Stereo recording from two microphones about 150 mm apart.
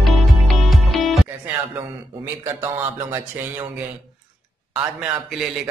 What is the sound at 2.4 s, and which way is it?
Speech, 15° right (ahead or behind).